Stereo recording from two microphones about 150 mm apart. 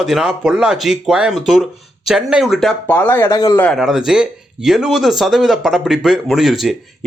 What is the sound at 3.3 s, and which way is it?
Speech, 25° left (ahead or behind).